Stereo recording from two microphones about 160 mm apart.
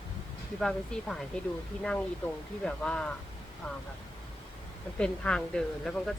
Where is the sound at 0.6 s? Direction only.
5° left (ahead or behind).